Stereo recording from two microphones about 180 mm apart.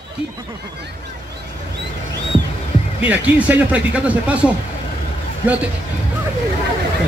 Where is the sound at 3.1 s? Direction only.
10° right (ahead or behind).